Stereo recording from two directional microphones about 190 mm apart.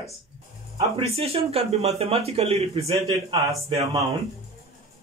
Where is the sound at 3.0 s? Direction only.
15° right (ahead or behind).